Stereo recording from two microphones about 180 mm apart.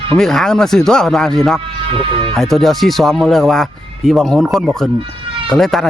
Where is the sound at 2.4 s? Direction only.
Centre (ahead or behind).